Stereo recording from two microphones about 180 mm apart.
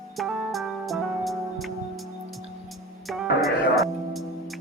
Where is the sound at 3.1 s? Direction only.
Centre (ahead or behind).